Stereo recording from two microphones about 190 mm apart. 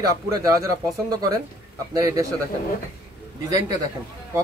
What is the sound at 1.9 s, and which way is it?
Speech, 20° right (ahead or behind).